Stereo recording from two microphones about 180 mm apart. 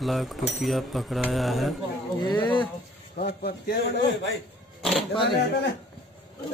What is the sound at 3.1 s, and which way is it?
A man's voice, 60° left (ahead or behind).